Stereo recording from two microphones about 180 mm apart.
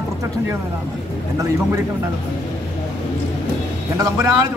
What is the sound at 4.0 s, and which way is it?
Speech, 20° right (ahead or behind).